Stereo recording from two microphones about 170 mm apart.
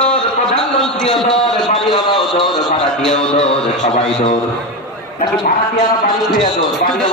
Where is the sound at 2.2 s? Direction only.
Centre (ahead or behind).